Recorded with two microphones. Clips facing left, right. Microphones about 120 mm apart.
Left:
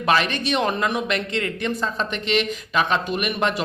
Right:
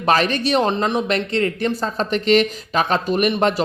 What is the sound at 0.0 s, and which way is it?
Speech, 40° right (ahead or behind).